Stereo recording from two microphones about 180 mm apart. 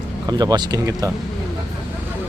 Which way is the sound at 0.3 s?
20° right (ahead or behind).